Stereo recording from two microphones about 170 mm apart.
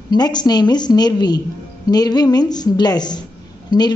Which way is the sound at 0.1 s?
25° left (ahead or behind).